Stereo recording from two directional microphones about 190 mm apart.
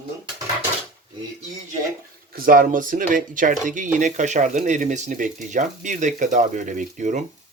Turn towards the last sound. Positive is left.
turn(degrees=-40)  # may be behind; listen again after turning